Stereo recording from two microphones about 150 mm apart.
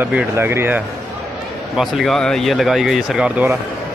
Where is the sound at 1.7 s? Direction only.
Centre (ahead or behind).